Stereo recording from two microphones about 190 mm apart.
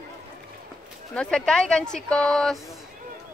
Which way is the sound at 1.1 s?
5° left (ahead or behind).